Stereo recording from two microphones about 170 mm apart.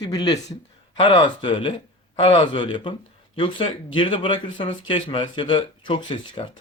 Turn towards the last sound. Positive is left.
turn(degrees=30)  # may be behind; listen again after turning